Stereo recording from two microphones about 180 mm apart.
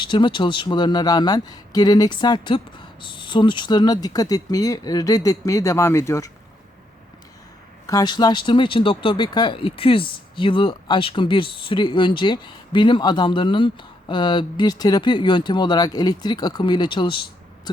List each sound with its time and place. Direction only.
0.0 s speech: 25° left (ahead or behind)
7.9 s speech: 20° left (ahead or behind)